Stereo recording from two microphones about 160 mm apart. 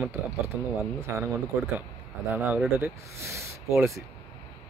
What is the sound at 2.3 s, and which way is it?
Speech, 10° right (ahead or behind).